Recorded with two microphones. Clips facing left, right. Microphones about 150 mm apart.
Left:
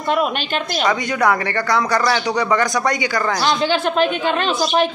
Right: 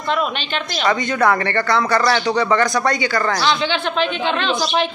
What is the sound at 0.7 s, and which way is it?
Speech, 10° left (ahead or behind).